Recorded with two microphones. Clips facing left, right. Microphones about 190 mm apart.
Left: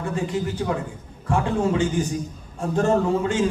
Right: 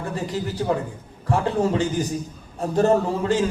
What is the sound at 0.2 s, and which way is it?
A man's voice, 35° right (ahead or behind).